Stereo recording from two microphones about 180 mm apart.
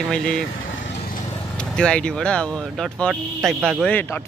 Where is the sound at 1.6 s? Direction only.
5° left (ahead or behind).